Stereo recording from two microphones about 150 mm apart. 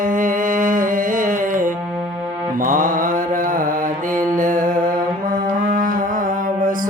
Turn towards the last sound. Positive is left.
turn(degrees=-65)  # may be behind; listen again after turning